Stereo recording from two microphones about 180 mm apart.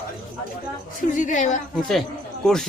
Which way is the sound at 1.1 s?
45° left (ahead or behind).